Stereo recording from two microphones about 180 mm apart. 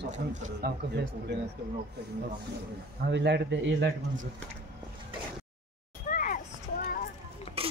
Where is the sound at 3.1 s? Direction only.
75° right (ahead or behind).